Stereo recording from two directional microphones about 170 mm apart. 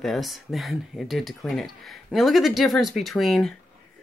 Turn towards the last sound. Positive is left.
turn(degrees=0)  # may be behind; listen again after turning